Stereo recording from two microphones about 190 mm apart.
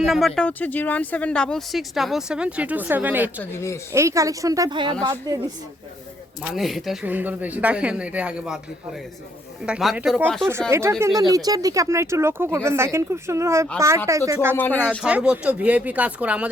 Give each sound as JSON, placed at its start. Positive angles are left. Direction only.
{"t": 0.0, "sound": "speech", "side_deg": 0}
{"t": 3.5, "sound": "speech", "side_deg": 15}
{"t": 3.9, "sound": "speech", "side_deg": -15}
{"t": 6.5, "sound": "speech", "side_deg": 0}
{"t": 9.6, "sound": "speech", "side_deg": -5}
{"t": 10.2, "sound": "speech", "side_deg": 5}
{"t": 10.7, "sound": "speech", "side_deg": -15}
{"t": 14.5, "sound": "speech", "side_deg": 10}
{"t": 14.8, "sound": "speech", "side_deg": -5}